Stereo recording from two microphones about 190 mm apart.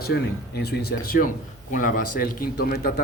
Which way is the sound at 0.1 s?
55° left (ahead or behind).